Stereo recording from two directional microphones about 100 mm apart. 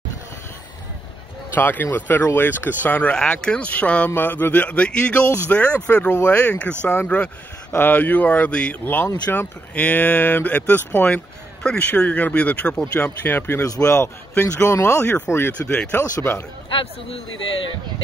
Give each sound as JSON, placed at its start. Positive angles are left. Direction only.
{"t": 1.5, "sound": "speech", "side_deg": 20}
{"t": 13.7, "sound": "a man's voice", "side_deg": 35}
{"t": 15.6, "sound": "speech", "side_deg": 10}